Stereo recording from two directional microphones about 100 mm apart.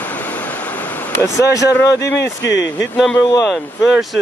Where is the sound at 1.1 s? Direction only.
30° left (ahead or behind).